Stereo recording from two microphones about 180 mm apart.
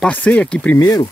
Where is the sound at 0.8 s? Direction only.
20° left (ahead or behind).